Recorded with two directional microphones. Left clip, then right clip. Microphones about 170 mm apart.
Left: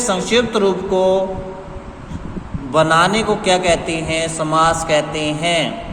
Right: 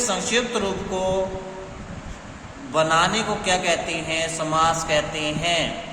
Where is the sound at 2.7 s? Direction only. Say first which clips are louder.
Left 6 dB; 30° left (ahead or behind).